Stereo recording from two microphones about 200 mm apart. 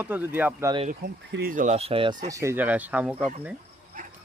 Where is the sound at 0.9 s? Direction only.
50° right (ahead or behind); by 2.2 s 25° right (ahead or behind).